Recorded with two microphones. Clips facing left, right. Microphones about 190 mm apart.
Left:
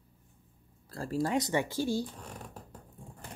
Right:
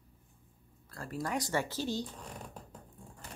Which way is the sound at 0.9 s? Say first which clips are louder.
Left 6 dB; 30° left (ahead or behind).